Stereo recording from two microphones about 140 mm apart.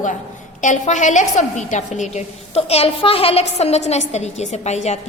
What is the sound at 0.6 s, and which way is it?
A woman's voice, 60° left (ahead or behind).